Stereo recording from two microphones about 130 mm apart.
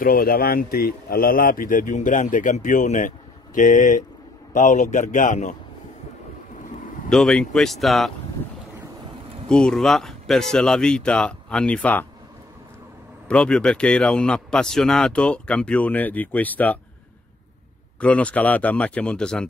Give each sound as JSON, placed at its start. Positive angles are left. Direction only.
{"t": 0.0, "sound": "a man's voice", "side_deg": 90}
{"t": 7.1, "sound": "speech", "side_deg": 5}
{"t": 9.5, "sound": "speech", "side_deg": 5}
{"t": 13.3, "sound": "a man's voice", "side_deg": 5}
{"t": 18.0, "sound": "a man's voice", "side_deg": 10}